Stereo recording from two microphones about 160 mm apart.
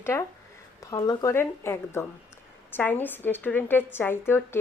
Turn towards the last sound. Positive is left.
turn(degrees=15)  # may be behind; listen again after turning